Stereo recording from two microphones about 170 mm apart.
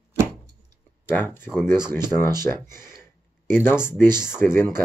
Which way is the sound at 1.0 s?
10° left (ahead or behind).